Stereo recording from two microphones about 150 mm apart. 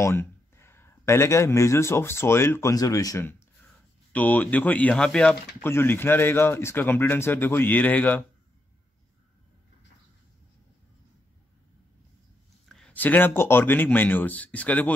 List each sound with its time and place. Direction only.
0.0 s speech: 15° left (ahead or behind)
12.6 s speech: 5° left (ahead or behind)